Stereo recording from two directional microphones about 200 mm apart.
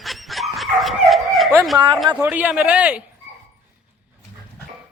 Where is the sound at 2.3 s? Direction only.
10° right (ahead or behind).